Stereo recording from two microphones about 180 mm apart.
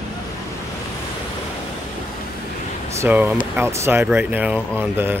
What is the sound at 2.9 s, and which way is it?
Speech, 15° right (ahead or behind).